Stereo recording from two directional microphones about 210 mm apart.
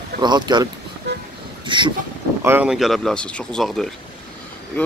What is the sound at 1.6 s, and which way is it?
Speech, 20° right (ahead or behind).